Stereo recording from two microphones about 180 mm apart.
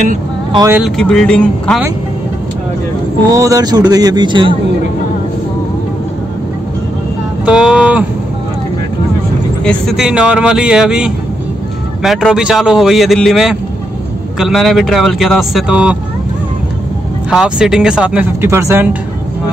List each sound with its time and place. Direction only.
0.5 s speech: 20° right (ahead or behind)
0.7 s speech: centre (ahead or behind)
3.3 s speech: 20° right (ahead or behind)
7.4 s speech: 5° right (ahead or behind)
9.7 s speech: centre (ahead or behind)
17.3 s speech: 5° right (ahead or behind)